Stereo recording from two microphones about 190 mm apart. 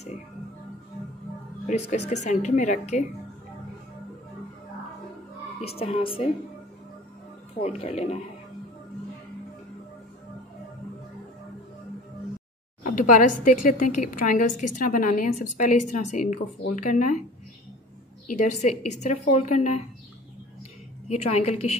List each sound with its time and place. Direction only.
2.0 s a woman's voice: 35° left (ahead or behind)
5.8 s a woman's voice: 30° left (ahead or behind)
7.6 s a woman's voice: 35° left (ahead or behind)
12.8 s a woman's voice: 45° left (ahead or behind)
18.2 s a woman's voice: 40° left (ahead or behind)
21.1 s a woman's voice: 35° left (ahead or behind)